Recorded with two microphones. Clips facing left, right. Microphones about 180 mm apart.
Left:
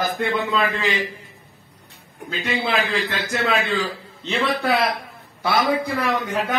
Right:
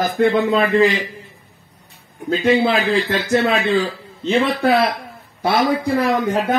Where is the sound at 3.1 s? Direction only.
25° right (ahead or behind).